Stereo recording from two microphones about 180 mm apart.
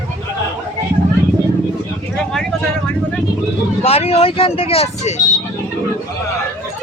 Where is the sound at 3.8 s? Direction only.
35° left (ahead or behind).